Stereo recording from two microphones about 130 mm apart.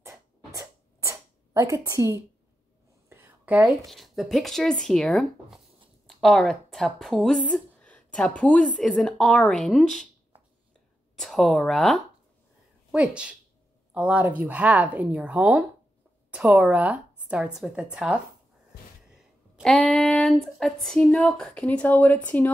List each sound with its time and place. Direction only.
0.6 s a sound: 25° right (ahead or behind)
3.8 s speech: centre (ahead or behind)
11.1 s a woman's voice: centre (ahead or behind)
19.6 s speech: 5° left (ahead or behind)
21.6 s speech: 15° left (ahead or behind)